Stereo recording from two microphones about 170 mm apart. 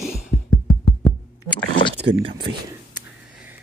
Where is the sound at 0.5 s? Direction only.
25° left (ahead or behind).